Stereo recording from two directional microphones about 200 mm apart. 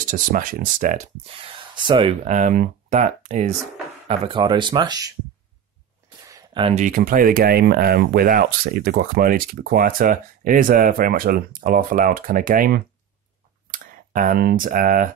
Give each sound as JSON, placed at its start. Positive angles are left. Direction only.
{"t": 0.1, "sound": "speech", "side_deg": -45}
{"t": 4.1, "sound": "speech", "side_deg": -25}
{"t": 6.2, "sound": "a sound", "side_deg": -20}
{"t": 6.7, "sound": "speech", "side_deg": -40}